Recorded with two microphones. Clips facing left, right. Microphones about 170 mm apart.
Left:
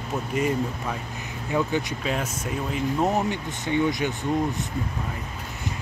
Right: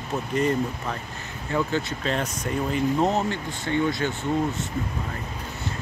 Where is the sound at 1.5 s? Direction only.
15° left (ahead or behind).